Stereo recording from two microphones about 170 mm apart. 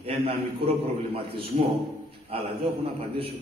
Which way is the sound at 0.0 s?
35° right (ahead or behind).